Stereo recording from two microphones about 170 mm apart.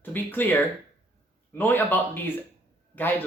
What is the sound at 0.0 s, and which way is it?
Speech, 10° left (ahead or behind).